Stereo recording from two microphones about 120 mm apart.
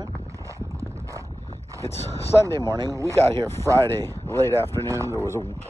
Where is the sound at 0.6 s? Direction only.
25° right (ahead or behind).